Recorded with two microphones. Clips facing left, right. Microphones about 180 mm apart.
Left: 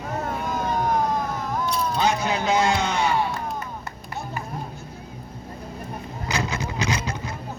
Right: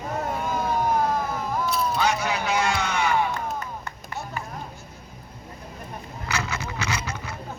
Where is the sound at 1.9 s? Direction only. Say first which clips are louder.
Left 2 dB; 20° left (ahead or behind).